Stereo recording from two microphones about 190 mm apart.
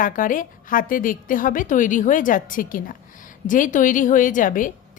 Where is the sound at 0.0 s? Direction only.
45° left (ahead or behind).